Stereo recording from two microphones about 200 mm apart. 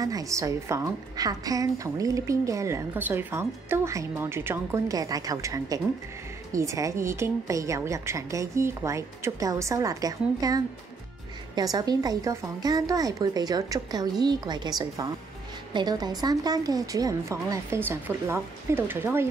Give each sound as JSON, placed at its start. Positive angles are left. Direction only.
{"t": 0.0, "sound": "a woman's voice", "side_deg": -15}